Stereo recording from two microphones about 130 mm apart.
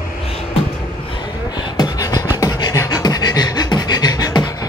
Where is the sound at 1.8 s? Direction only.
25° left (ahead or behind).